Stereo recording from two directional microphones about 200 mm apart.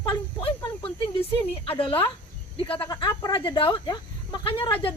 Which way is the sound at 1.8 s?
25° left (ahead or behind).